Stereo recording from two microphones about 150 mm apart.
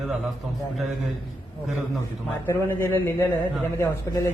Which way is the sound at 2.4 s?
15° left (ahead or behind).